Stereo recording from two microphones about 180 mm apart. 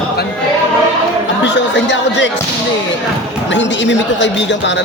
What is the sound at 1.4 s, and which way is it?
Speech, 80° left.